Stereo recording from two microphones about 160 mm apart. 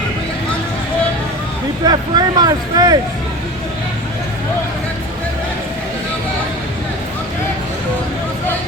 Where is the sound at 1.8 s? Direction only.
25° right (ahead or behind).